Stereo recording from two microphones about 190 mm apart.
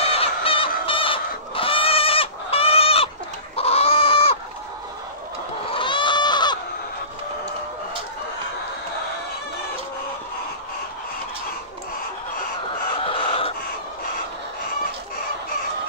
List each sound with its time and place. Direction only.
0.0 s goose: 30° left (ahead or behind)
3.5 s chicken: 30° left (ahead or behind)
5.7 s chicken: 25° left (ahead or behind)
13.0 s a sound: 30° left (ahead or behind)